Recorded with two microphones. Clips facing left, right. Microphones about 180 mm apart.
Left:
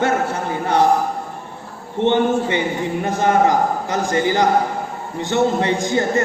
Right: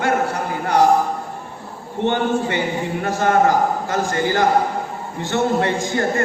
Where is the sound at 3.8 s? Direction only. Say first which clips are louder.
Left 1 dB; 20° left (ahead or behind).